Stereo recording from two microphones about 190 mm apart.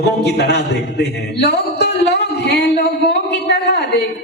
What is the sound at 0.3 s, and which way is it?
A man's voice, 65° left (ahead or behind).